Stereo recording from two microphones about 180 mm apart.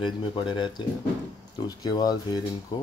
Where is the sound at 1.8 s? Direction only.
20° left (ahead or behind).